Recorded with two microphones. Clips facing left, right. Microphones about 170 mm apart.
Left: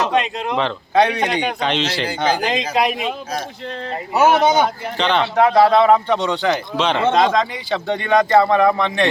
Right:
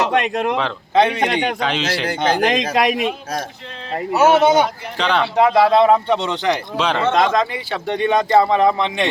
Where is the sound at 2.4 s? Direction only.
65° right (ahead or behind).